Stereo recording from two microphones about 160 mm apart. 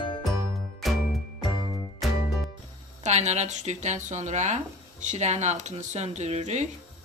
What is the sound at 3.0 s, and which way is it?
Speech, 45° right (ahead or behind).